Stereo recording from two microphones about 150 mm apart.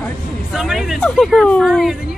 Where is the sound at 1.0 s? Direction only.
Centre (ahead or behind).